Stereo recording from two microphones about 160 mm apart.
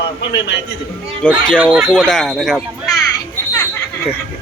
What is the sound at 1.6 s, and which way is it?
Speech, 10° right (ahead or behind).